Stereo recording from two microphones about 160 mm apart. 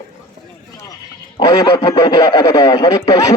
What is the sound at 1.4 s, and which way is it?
Speech, 25° left (ahead or behind).